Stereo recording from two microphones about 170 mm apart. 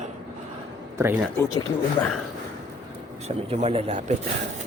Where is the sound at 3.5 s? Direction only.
35° right (ahead or behind).